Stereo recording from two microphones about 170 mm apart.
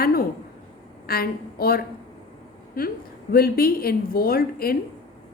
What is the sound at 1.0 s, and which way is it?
Speech, 60° left (ahead or behind).